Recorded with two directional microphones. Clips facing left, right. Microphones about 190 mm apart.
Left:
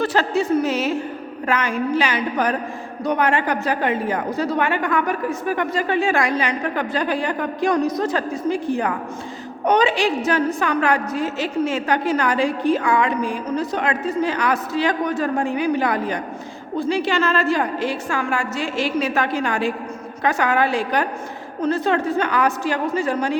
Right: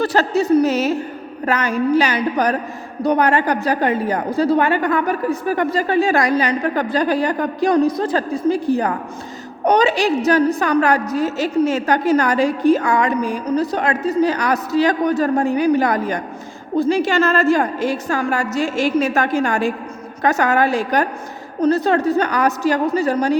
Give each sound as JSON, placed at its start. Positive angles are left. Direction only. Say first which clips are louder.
{"t": 0.0, "sound": "a woman's voice", "louder": "right 3 dB", "side_deg": -40}